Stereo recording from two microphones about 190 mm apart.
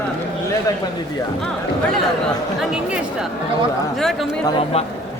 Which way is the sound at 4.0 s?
Centre (ahead or behind).